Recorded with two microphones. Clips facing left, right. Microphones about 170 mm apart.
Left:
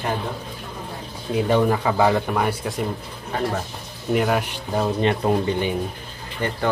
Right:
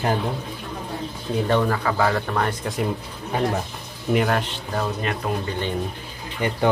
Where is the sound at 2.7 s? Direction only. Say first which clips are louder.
Right 1 dB; centre (ahead or behind).